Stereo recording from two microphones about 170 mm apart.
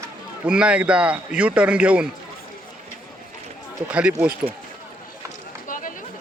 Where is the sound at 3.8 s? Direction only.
5° right (ahead or behind).